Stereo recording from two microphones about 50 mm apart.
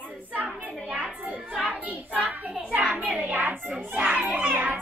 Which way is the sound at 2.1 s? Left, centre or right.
Right.